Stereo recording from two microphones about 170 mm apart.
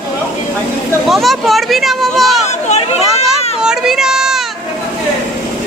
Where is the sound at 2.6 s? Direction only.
40° left (ahead or behind).